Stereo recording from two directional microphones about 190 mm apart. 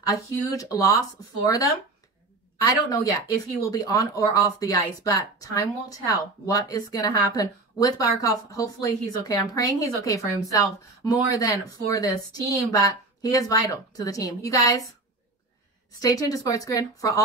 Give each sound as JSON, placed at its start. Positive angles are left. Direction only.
{"t": 0.0, "sound": "speech", "side_deg": 15}
{"t": 16.0, "sound": "a woman's voice", "side_deg": 20}